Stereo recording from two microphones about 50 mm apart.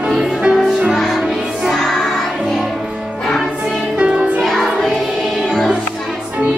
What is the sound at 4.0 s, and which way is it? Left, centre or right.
Music, right.